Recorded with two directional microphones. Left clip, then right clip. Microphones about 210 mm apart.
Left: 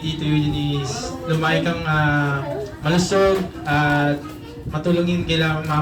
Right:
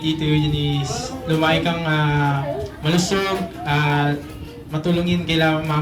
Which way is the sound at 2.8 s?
55° right (ahead or behind).